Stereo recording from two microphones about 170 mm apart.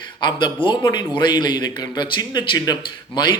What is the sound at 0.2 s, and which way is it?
A man's voice, 25° left (ahead or behind).